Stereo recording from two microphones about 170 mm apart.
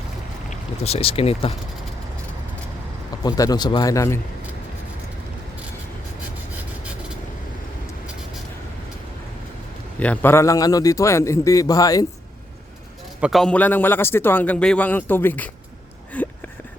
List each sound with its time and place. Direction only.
0.9 s speech: 35° left (ahead or behind)
3.2 s a man's voice: 20° left (ahead or behind)
10.0 s a man's voice: 10° left (ahead or behind)
13.2 s a man's voice: centre (ahead or behind)